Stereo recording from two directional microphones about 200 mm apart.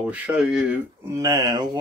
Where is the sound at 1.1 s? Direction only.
15° right (ahead or behind).